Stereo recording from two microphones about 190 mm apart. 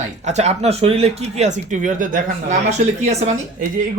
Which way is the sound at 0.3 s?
35° right (ahead or behind).